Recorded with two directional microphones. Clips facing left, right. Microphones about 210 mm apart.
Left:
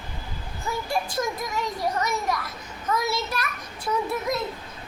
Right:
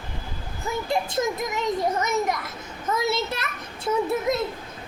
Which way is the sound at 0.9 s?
20° right (ahead or behind).